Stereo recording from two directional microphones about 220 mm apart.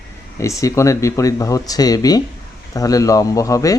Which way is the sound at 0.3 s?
15° left (ahead or behind).